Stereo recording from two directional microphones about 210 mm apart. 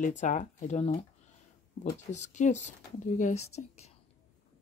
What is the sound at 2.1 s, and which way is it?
Speech, 35° left (ahead or behind).